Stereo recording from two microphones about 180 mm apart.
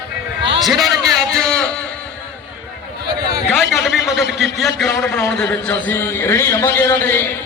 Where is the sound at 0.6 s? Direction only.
Centre (ahead or behind).